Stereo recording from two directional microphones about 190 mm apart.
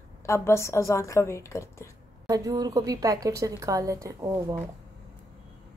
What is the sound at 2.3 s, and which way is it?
A woman's voice, 20° right (ahead or behind).